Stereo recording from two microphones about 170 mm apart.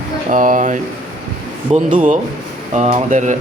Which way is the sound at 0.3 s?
50° right (ahead or behind).